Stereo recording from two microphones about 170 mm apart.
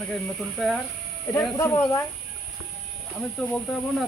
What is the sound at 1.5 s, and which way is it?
Speech, 20° left (ahead or behind).